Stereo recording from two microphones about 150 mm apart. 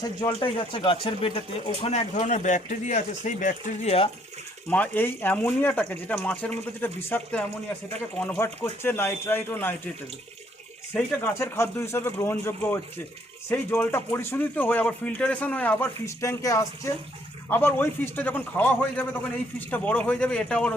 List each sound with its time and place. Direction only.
0.0 s speech: 25° left (ahead or behind)
0.3 s speech: 35° left (ahead or behind)
4.7 s speech: 10° left (ahead or behind)
10.9 s speech: 15° left (ahead or behind)